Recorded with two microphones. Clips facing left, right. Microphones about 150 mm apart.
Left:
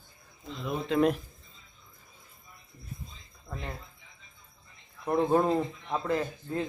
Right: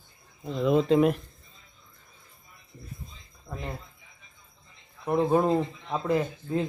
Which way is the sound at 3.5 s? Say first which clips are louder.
Right 3 dB; 10° right (ahead or behind).